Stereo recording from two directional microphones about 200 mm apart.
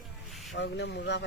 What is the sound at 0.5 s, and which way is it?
Speech, 60° left (ahead or behind).